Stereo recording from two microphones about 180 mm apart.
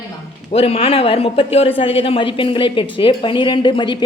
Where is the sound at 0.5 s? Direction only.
30° left (ahead or behind).